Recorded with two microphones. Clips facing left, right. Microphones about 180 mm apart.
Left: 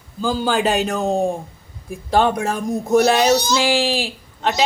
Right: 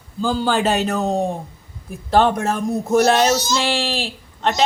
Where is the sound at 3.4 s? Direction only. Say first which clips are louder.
Left 2 dB; 60° left (ahead or behind).